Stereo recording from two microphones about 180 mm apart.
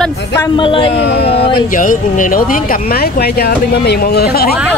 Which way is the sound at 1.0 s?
65° left (ahead or behind).